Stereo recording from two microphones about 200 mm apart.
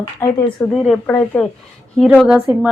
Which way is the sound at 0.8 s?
5° left (ahead or behind).